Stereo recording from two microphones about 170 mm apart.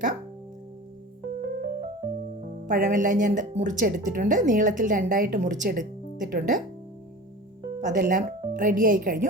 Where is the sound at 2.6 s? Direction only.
50° right (ahead or behind).